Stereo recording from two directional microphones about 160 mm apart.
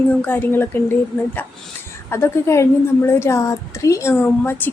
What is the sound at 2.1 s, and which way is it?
A woman's voice, 15° left (ahead or behind).